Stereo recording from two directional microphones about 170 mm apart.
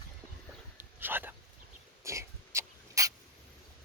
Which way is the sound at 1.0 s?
10° right (ahead or behind).